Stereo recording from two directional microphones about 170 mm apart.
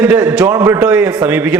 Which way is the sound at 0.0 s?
5° right (ahead or behind).